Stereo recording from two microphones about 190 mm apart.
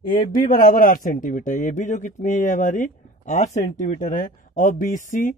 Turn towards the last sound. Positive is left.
turn(degrees=40)  # may be behind; listen again after turning